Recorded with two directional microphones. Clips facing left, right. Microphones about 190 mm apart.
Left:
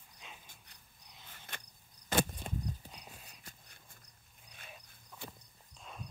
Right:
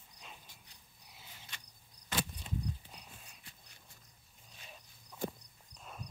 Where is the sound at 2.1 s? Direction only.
50° left (ahead or behind).